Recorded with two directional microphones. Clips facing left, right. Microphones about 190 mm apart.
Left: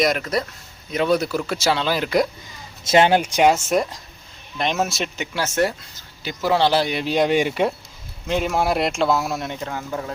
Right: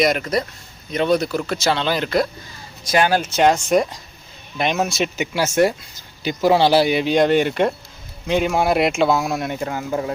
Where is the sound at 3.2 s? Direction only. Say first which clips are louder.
Even; 10° left (ahead or behind).